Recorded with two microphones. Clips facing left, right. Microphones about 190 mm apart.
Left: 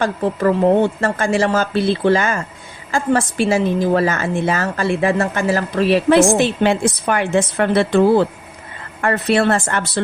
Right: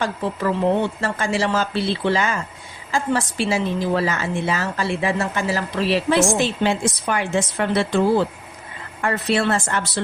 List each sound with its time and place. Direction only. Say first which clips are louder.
0.0 s a woman's voice: left 6 dB; 50° left (ahead or behind)